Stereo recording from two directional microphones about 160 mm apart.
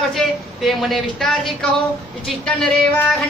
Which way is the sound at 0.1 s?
Centre (ahead or behind).